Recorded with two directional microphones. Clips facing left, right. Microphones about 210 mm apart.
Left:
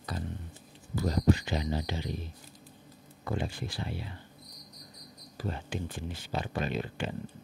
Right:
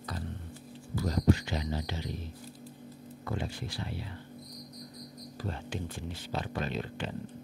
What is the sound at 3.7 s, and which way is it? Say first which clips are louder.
Speech: left 1 dB; 15° left (ahead or behind).